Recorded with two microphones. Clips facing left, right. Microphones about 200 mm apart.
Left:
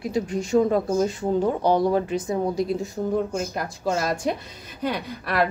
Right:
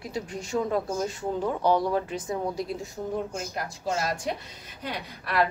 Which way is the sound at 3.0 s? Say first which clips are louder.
Left 6 dB; 45° left (ahead or behind).